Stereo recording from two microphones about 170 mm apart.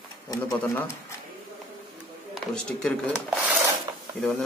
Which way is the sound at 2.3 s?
5° left (ahead or behind).